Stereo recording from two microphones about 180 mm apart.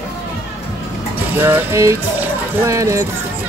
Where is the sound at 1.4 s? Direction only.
10° right (ahead or behind).